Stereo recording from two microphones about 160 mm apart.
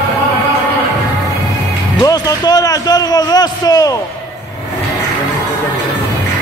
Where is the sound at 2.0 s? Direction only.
25° left (ahead or behind).